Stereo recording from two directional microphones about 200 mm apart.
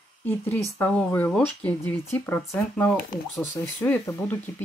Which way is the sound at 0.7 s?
5° left (ahead or behind).